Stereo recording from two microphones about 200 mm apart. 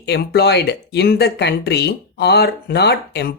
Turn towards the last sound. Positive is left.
turn(degrees=55)  # may be behind; listen again after turning